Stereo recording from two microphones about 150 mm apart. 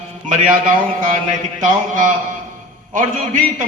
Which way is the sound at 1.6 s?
60° right (ahead or behind).